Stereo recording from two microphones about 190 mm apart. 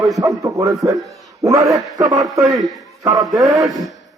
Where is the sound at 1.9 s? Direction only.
20° right (ahead or behind).